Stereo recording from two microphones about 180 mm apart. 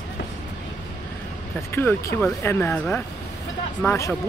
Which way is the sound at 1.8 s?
15° left (ahead or behind).